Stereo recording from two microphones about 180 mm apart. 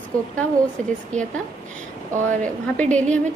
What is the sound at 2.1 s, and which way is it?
Speech, 45° right (ahead or behind).